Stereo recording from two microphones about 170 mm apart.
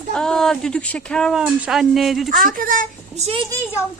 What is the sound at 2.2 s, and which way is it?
Speech, 55° right (ahead or behind).